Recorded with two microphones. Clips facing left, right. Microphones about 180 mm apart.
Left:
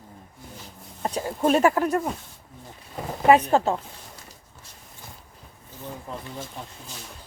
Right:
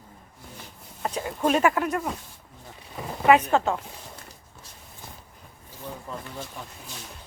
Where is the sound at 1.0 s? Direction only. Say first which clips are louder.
Left 2 dB; 35° left (ahead or behind).